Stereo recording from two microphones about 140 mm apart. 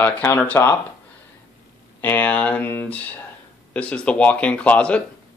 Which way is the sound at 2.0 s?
10° left (ahead or behind).